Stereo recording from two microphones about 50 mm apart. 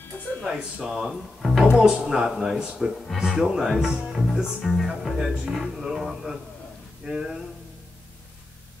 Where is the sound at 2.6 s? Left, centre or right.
Centre.